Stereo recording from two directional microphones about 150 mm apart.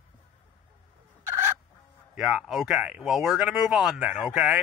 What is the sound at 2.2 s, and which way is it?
Speech, centre (ahead or behind).